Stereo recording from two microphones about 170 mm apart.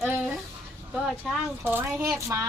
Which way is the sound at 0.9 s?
5° right (ahead or behind).